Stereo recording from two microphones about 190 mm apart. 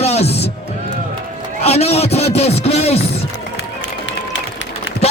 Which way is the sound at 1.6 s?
30° left (ahead or behind).